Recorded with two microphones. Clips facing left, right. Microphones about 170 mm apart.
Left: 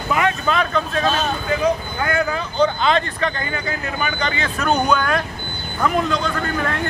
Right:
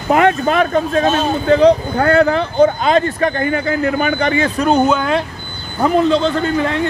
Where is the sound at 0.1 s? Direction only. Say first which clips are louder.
Right 7 dB; 55° right (ahead or behind).